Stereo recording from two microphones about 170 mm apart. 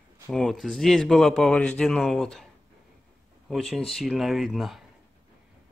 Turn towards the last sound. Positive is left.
turn(degrees=0)  # may be behind; listen again after turning